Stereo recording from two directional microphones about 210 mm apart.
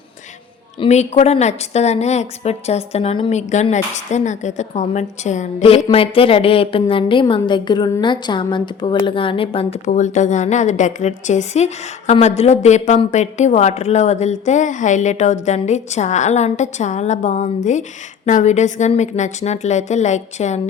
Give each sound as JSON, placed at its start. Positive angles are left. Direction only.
{"t": 0.8, "sound": "a woman's voice", "side_deg": 30}